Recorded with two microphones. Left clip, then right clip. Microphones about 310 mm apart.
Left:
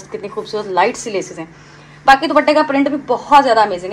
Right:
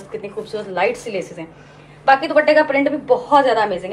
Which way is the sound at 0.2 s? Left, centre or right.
Centre.